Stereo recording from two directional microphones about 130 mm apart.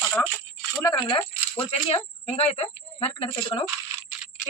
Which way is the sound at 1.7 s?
50° left (ahead or behind).